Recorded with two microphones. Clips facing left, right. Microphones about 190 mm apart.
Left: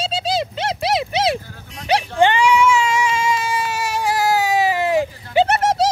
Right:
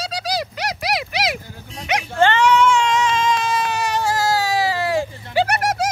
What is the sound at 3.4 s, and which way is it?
Baby cry, 10° left (ahead or behind).